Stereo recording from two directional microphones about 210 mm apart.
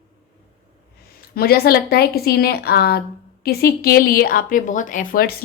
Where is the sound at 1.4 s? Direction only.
45° left (ahead or behind).